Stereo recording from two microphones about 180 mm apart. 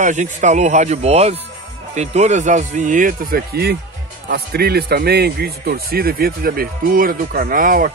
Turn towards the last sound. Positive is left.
turn(degrees=-50)  # may be behind; listen again after turning